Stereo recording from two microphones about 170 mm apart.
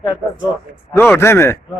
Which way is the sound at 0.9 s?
15° left (ahead or behind).